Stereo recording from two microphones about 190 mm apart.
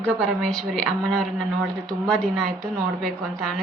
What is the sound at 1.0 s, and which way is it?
A woman's voice, 5° left (ahead or behind).